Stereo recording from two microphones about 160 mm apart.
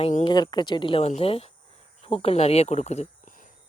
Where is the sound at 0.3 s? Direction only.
30° left (ahead or behind).